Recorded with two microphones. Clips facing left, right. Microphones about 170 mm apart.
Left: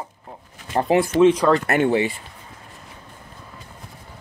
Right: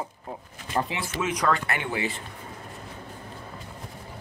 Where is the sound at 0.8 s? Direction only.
45° left (ahead or behind).